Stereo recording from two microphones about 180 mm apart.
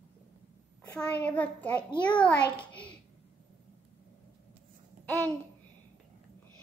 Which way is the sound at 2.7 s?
5° left (ahead or behind).